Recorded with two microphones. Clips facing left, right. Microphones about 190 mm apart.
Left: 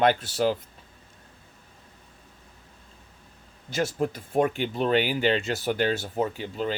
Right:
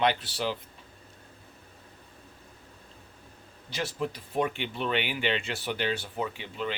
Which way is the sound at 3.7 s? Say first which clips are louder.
Left 6 dB; 45° left (ahead or behind).